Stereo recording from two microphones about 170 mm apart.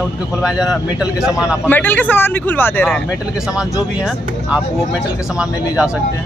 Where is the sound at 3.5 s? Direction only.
5° right (ahead or behind).